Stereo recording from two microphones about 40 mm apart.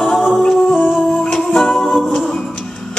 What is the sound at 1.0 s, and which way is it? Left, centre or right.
Music, left.